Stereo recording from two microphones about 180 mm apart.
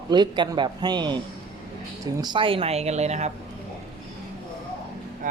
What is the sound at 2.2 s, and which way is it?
Speech, 25° right (ahead or behind).